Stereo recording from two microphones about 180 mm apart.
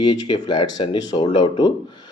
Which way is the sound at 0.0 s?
25° left (ahead or behind).